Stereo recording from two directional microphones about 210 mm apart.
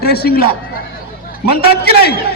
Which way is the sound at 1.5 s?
50° left (ahead or behind).